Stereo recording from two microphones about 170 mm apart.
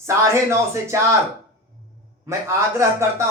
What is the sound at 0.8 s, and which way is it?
Speech, 15° right (ahead or behind).